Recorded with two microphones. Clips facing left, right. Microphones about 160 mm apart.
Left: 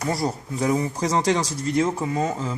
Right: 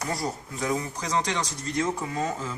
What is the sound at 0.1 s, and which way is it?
Speech, 35° left (ahead or behind).